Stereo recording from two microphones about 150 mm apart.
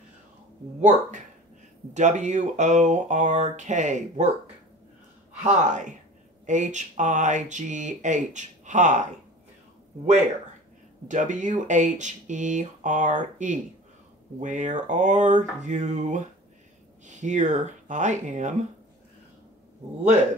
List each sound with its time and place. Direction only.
0.7 s speech: 50° right (ahead or behind)
5.4 s speech: 55° right (ahead or behind)
11.1 s speech: 55° right (ahead or behind)